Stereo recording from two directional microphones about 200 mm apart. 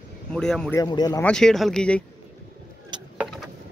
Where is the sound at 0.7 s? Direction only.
20° left (ahead or behind).